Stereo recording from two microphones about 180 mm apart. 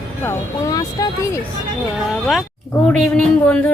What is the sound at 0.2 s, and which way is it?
Speech, 15° left (ahead or behind).